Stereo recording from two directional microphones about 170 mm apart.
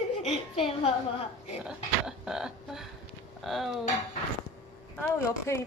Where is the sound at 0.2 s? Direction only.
40° left (ahead or behind).